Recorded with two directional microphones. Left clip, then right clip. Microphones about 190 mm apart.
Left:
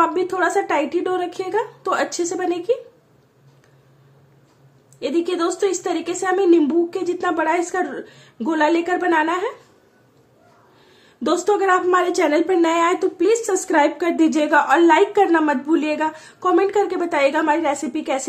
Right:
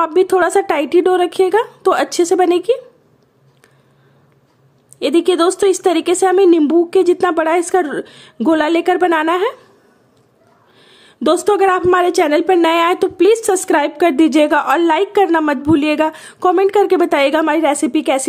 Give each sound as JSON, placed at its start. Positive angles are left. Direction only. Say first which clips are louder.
{"t": 0.0, "sound": "a woman's voice", "louder": "right 5 dB", "side_deg": -45}
{"t": 4.9, "sound": "a woman's voice", "louder": "right 8 dB", "side_deg": -45}
{"t": 10.8, "sound": "a woman's voice", "louder": "right 7 dB", "side_deg": -45}